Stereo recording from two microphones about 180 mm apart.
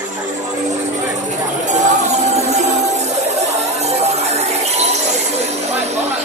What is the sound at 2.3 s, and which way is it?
Music, 40° right (ahead or behind).